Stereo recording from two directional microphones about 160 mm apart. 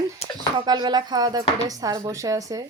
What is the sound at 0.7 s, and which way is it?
A woman's voice, 25° right (ahead or behind).